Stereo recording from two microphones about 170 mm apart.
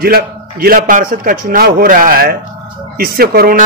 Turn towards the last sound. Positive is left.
turn(degrees=-60)  # may be behind; listen again after turning